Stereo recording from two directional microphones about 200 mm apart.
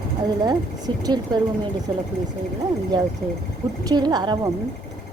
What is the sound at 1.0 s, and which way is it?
Speech, 20° right (ahead or behind).